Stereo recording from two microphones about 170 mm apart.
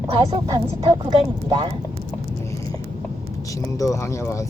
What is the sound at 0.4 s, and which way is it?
A woman's voice, 20° right (ahead or behind).